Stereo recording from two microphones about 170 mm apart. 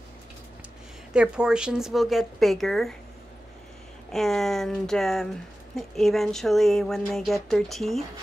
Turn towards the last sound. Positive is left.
turn(degrees=0)  # may be behind; listen again after turning